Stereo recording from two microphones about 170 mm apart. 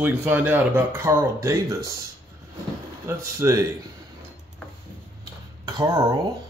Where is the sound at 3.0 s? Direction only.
15° right (ahead or behind).